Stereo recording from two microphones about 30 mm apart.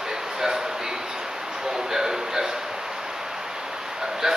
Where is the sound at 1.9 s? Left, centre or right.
Centre.